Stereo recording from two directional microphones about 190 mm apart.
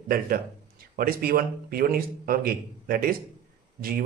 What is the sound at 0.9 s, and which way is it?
Speech, 50° right (ahead or behind).